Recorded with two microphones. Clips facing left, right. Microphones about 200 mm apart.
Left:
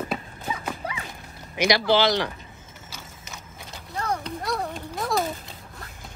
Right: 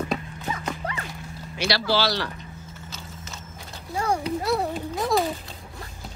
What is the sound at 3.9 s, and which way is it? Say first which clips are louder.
Clip-clop: right 4 dB; 10° right (ahead or behind).